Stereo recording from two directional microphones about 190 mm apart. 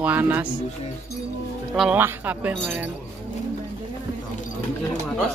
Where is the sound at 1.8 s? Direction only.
10° right (ahead or behind).